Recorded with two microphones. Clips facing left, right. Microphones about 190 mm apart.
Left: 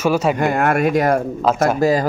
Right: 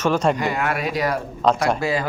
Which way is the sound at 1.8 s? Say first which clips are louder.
Left 7 dB; 40° left (ahead or behind).